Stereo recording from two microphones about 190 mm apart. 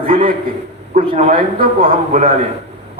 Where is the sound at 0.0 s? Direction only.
30° right (ahead or behind).